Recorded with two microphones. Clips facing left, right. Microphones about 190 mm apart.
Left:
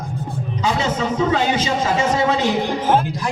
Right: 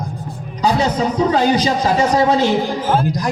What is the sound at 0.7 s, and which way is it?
A man's voice, 35° right (ahead or behind).